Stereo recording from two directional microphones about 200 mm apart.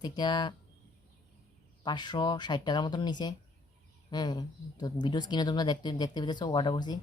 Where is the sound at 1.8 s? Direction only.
20° left (ahead or behind).